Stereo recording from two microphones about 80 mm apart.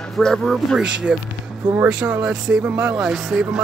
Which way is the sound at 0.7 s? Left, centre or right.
Centre.